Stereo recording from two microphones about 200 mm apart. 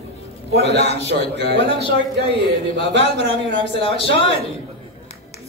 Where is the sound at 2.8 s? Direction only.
30° left (ahead or behind).